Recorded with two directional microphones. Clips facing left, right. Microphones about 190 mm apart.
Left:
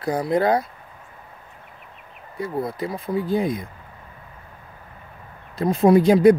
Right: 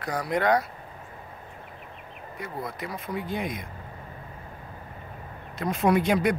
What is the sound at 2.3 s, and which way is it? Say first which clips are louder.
Speech: left 9 dB; 30° left (ahead or behind).